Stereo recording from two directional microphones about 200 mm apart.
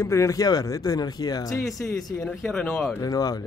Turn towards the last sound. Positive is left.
turn(degrees=20)  # may be behind; listen again after turning